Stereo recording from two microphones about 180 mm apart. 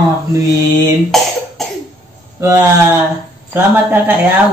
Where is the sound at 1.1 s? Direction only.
Centre (ahead or behind).